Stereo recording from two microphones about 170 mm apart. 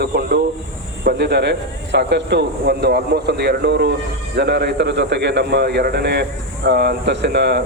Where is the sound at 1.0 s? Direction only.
80° right.